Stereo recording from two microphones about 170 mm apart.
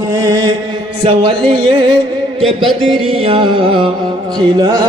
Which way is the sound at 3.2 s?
35° right (ahead or behind).